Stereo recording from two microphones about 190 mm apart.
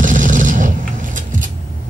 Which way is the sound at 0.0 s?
40° right (ahead or behind).